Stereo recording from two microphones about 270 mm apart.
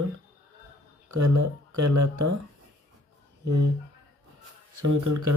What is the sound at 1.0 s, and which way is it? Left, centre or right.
Speech, right.